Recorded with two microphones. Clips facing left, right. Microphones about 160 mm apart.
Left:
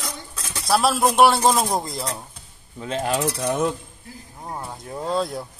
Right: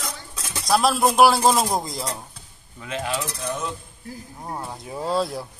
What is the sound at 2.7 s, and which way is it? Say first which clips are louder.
Coin: left 4 dB; 35° left (ahead or behind).